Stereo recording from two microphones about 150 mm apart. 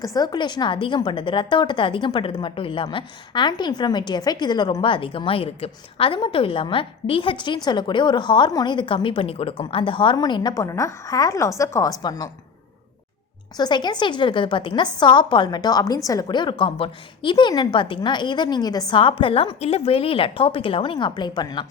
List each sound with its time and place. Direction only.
0.0 s a woman's voice: 25° left (ahead or behind)
13.6 s a woman's voice: 30° left (ahead or behind)